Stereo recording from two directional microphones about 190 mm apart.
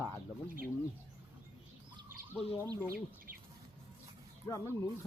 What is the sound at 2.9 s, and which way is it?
Bird, 50° right (ahead or behind).